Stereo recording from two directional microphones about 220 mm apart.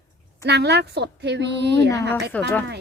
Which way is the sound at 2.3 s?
5° left (ahead or behind).